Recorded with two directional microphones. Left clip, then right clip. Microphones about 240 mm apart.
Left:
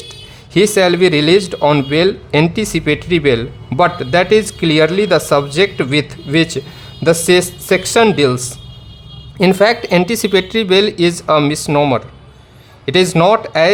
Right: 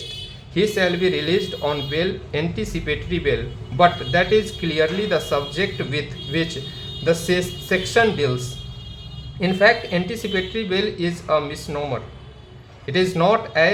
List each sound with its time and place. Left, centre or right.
0.5 s speech: left